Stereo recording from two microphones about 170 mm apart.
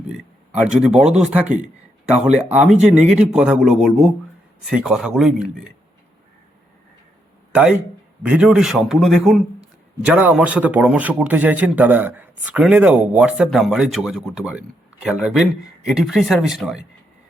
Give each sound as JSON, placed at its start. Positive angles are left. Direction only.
{"t": 0.1, "sound": "speech", "side_deg": -5}
{"t": 2.1, "sound": "speech", "side_deg": -40}
{"t": 2.5, "sound": "a man's voice", "side_deg": -10}
{"t": 7.5, "sound": "a man's voice", "side_deg": -5}